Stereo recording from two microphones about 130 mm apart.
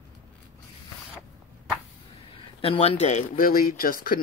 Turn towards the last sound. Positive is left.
turn(degrees=90)